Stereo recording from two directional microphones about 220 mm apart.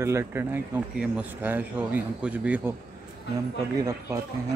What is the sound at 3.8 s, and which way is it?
Speech, 15° right (ahead or behind).